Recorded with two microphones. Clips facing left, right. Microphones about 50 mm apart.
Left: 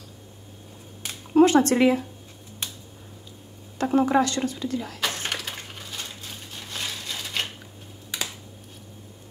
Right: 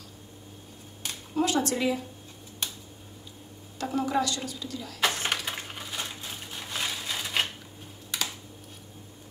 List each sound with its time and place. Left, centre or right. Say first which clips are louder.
1.3 s speech: left 9 dB; left
3.7 s speech: left 7 dB; left
5.2 s a sound: right 1 dB; centre